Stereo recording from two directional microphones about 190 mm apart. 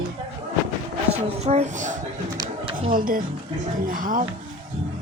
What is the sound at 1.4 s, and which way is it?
Speech, 35° right (ahead or behind).